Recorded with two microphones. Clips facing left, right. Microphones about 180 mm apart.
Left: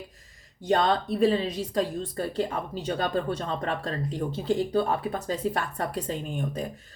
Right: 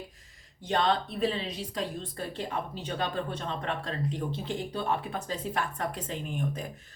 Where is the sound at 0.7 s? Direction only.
45° left (ahead or behind).